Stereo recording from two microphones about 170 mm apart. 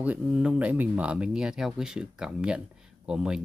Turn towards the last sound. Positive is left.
turn(degrees=-5)  # may be behind; listen again after turning